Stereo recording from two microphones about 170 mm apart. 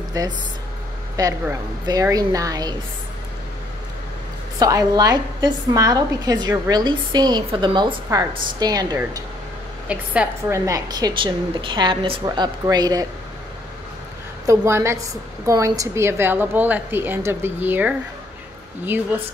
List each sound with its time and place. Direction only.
0.2 s a woman's voice: 20° right (ahead or behind)
4.6 s a woman's voice: 20° right (ahead or behind)
9.8 s a woman's voice: 5° right (ahead or behind)
10.6 s a woman's voice: 20° right (ahead or behind)
14.4 s a woman's voice: 15° right (ahead or behind)